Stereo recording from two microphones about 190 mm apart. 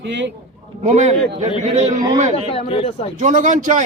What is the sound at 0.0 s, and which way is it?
Speech, 70° right (ahead or behind).